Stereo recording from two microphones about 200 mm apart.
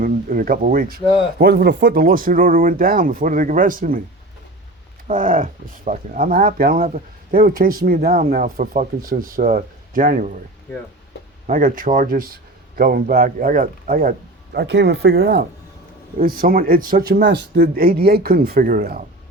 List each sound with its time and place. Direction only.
0.0 s speech: 45° right (ahead or behind)
5.0 s speech: 45° right (ahead or behind)
11.4 s speech: 45° right (ahead or behind)
14.5 s speech: 55° right (ahead or behind)